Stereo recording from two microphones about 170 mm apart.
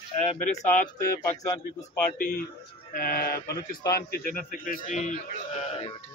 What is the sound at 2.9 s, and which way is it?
A man's voice, 55° left (ahead or behind).